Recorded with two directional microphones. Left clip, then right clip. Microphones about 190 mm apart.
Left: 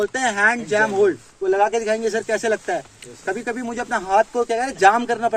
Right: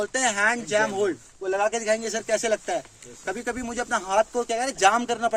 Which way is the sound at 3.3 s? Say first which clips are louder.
Left 5 dB; 50° right (ahead or behind).